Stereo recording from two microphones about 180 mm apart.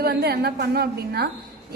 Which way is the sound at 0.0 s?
60° right (ahead or behind).